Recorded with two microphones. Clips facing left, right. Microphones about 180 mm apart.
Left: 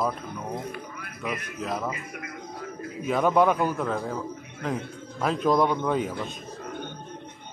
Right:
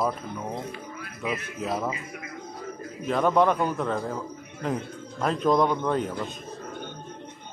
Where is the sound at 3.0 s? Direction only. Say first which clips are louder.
Even; 5° left (ahead or behind).